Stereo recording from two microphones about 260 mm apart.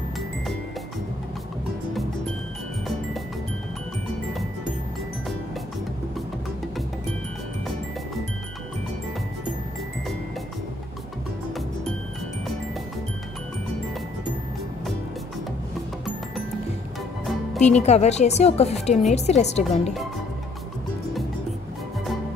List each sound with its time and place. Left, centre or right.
17.6 s a woman's voice: left